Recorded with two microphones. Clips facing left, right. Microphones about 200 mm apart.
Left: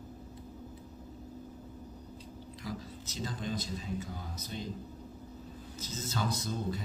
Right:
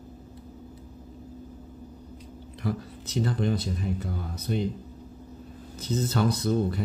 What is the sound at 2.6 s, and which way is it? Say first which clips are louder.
Speech: right 10 dB; 60° right (ahead or behind).